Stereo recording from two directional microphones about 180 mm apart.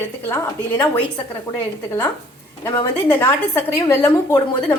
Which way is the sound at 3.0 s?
15° left (ahead or behind).